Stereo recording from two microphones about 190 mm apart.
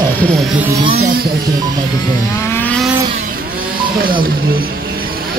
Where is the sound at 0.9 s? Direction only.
50° right (ahead or behind).